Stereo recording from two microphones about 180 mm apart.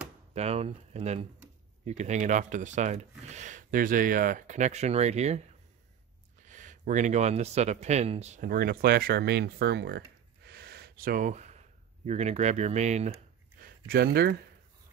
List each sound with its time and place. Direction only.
0.3 s speech: 35° right (ahead or behind)
6.4 s speech: 45° right (ahead or behind)
8.5 s speech: 55° right (ahead or behind); by 13.2 s 40° right (ahead or behind)
13.6 s a sound: 55° right (ahead or behind)